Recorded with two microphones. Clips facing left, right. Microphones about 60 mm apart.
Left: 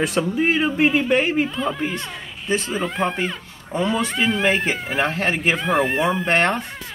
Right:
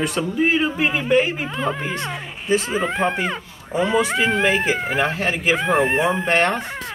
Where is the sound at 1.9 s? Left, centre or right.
Right.